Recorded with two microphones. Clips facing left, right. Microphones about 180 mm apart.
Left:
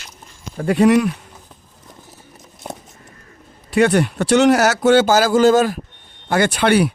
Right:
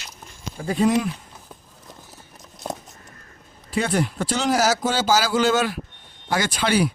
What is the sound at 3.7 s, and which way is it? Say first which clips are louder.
Speech: left 8 dB; 70° left (ahead or behind).